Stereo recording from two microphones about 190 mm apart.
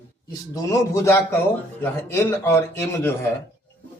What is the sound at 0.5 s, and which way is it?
A man's voice, 15° left (ahead or behind).